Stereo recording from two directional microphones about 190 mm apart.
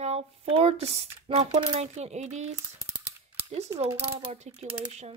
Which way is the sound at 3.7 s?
30° right (ahead or behind).